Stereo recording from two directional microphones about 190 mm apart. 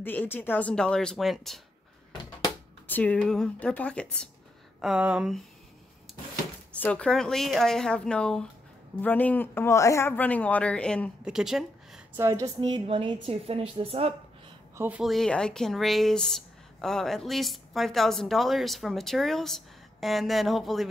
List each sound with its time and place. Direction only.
0.0 s speech: 10° left (ahead or behind)
4.8 s speech: 5° right (ahead or behind)
6.1 s a sound: centre (ahead or behind)
6.7 s a man's voice: 5° left (ahead or behind)
11.2 s a sound: 5° right (ahead or behind)
12.2 s a woman's voice: 15° right (ahead or behind); by 14.1 s 30° right (ahead or behind)
14.8 s speech: 5° right (ahead or behind)